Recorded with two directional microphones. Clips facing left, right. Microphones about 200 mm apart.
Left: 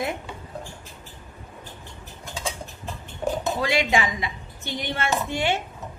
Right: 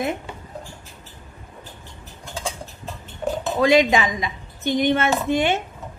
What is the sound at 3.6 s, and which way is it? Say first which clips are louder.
A woman's voice: right 8 dB; 20° right (ahead or behind).